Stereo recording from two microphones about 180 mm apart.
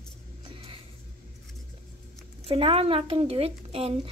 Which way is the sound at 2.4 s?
30° right (ahead or behind).